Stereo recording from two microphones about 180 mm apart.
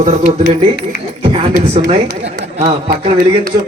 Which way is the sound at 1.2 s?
30° right (ahead or behind).